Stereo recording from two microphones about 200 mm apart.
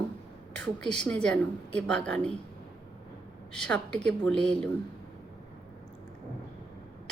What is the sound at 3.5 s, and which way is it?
A woman's voice, 5° left (ahead or behind).